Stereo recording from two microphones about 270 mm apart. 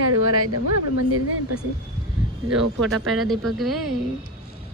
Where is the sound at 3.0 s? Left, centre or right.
Centre.